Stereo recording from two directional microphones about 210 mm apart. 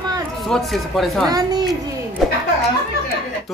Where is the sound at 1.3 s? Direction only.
20° right (ahead or behind).